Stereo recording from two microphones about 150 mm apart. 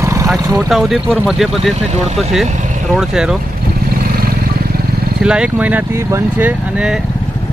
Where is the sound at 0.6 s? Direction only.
Centre (ahead or behind).